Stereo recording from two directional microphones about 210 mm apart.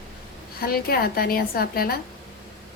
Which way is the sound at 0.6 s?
45° left (ahead or behind).